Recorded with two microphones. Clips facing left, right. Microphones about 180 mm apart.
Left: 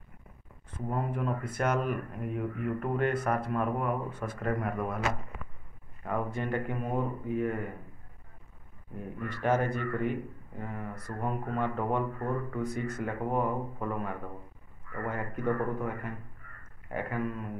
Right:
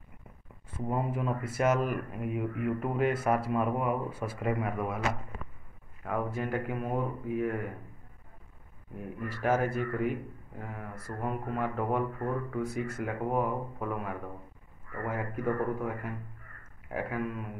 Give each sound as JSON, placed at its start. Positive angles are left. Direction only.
{"t": 0.7, "sound": "speech", "side_deg": -10}
{"t": 6.0, "sound": "speech", "side_deg": -5}
{"t": 8.9, "sound": "speech", "side_deg": -5}